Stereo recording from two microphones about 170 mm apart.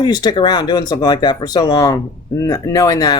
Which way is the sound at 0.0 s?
25° left (ahead or behind).